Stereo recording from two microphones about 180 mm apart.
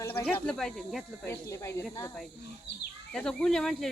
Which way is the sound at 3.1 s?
5° left (ahead or behind).